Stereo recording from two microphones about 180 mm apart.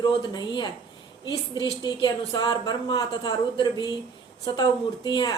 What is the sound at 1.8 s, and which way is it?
A woman's voice, 25° left (ahead or behind).